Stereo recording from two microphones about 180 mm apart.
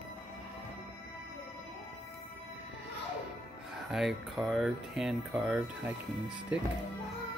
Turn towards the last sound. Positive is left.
turn(degrees=-5)  # may be behind; listen again after turning